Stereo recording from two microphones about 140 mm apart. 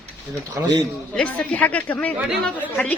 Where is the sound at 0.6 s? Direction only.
15° right (ahead or behind).